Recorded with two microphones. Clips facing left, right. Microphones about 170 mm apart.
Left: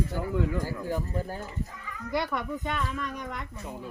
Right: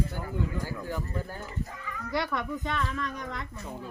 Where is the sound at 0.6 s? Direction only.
40° left (ahead or behind).